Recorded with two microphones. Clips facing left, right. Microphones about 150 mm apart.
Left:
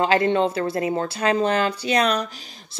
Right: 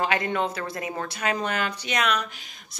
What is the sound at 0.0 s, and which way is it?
Speech, 30° left (ahead or behind).